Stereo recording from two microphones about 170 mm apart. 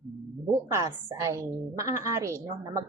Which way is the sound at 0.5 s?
20° right (ahead or behind).